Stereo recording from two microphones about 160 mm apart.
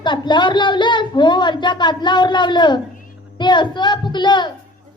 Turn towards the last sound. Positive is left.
turn(degrees=30)  # may be behind; listen again after turning